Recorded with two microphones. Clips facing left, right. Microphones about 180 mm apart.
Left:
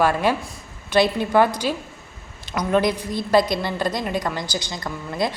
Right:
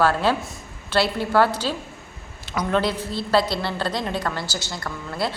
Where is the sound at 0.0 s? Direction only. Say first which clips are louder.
Left 1 dB; 15° left (ahead or behind).